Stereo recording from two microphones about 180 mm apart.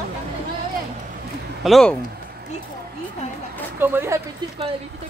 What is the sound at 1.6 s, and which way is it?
Speech, centre (ahead or behind).